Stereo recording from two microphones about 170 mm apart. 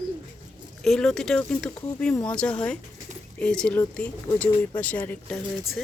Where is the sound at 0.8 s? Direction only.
5° left (ahead or behind).